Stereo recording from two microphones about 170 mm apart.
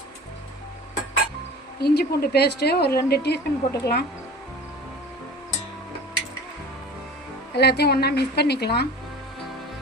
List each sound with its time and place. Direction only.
1.8 s a woman's voice: 70° left (ahead or behind)
7.5 s a woman's voice: 75° left (ahead or behind)